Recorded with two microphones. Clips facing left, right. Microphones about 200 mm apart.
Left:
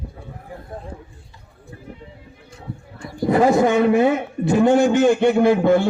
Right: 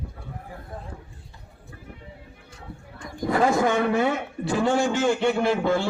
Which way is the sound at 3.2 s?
20° left (ahead or behind).